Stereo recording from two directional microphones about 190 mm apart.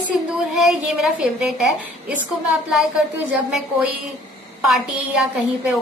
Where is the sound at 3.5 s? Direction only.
5° right (ahead or behind).